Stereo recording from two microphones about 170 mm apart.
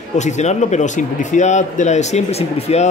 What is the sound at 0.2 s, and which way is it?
Speech, 45° left (ahead or behind).